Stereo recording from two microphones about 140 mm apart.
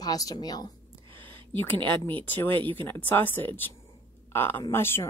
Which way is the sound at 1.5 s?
15° left (ahead or behind).